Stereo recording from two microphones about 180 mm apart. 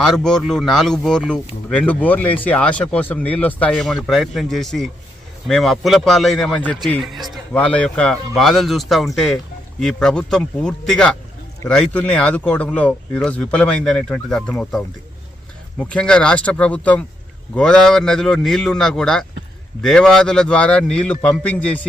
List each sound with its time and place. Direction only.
0.0 s speech: 5° left (ahead or behind)